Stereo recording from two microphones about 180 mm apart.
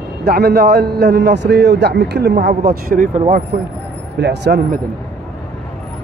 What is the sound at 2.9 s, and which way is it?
Speech, 45° right (ahead or behind).